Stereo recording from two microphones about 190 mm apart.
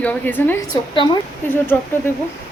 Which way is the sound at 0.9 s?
25° left (ahead or behind).